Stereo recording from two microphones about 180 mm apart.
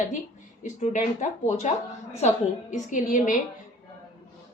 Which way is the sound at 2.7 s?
45° left (ahead or behind).